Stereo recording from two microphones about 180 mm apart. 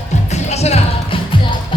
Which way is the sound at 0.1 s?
40° left (ahead or behind).